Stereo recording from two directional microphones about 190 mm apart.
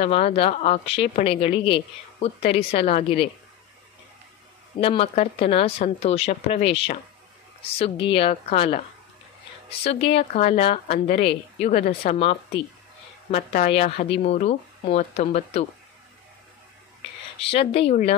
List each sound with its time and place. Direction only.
0.0 s a woman's voice: 30° left (ahead or behind)
4.7 s a woman's voice: 30° left (ahead or behind)
10.3 s a woman's voice: 35° left (ahead or behind)
17.5 s a woman's voice: 30° left (ahead or behind)